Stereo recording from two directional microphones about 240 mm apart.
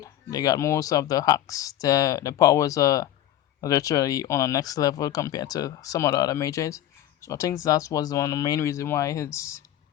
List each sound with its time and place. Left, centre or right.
0.0 s speech: centre